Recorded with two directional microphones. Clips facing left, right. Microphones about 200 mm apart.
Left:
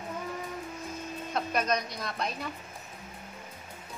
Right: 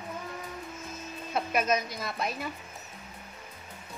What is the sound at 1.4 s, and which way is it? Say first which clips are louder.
A woman's voice: right 2 dB; 5° right (ahead or behind).